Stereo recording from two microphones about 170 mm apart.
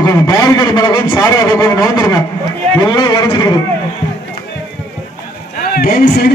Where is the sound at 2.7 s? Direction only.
25° left (ahead or behind).